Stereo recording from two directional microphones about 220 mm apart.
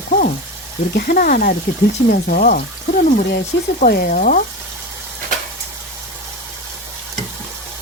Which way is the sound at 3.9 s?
45° left (ahead or behind).